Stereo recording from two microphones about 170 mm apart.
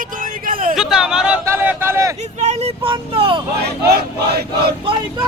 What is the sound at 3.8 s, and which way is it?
Crowd, 70° right (ahead or behind).